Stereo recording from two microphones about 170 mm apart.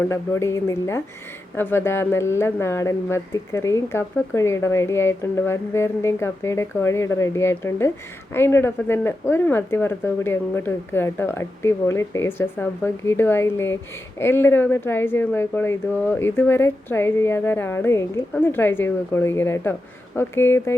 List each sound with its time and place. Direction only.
0.0 s speech: 15° left (ahead or behind)